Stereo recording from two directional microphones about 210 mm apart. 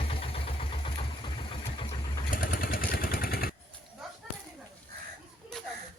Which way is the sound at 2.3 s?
45° left (ahead or behind).